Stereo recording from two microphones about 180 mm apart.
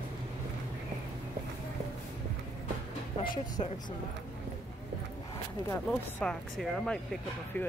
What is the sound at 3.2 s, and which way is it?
Speech, 50° left (ahead or behind).